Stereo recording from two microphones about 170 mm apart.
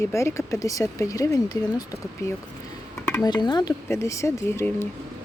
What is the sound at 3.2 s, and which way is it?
Speech, 25° left (ahead or behind).